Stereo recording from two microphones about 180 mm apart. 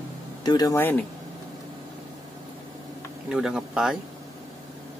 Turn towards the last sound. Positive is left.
turn(degrees=-5)  # may be behind; listen again after turning